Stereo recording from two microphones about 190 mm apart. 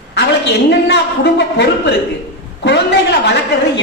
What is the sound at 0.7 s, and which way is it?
A woman's voice, 65° left (ahead or behind).